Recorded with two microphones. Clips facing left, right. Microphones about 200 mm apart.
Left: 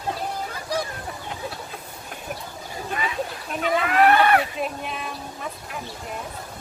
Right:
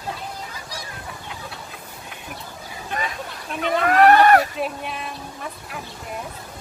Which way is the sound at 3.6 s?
45° right (ahead or behind).